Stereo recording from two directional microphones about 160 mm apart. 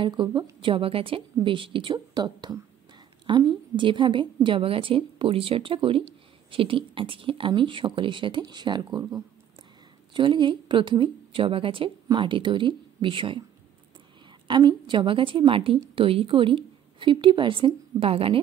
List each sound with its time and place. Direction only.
0.0 s a woman's voice: 30° right (ahead or behind)